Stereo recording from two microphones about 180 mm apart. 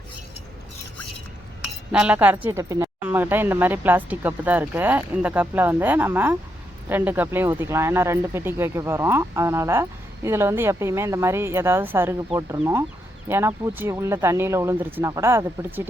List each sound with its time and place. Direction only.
1.9 s a woman's voice: 5° right (ahead or behind)